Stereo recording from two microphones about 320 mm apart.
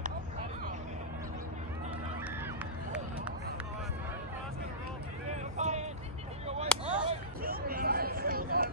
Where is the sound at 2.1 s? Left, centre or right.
Centre.